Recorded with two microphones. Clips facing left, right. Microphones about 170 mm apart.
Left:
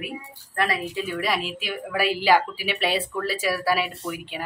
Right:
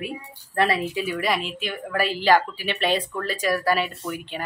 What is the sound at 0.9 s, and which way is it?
A woman's voice, 5° right (ahead or behind).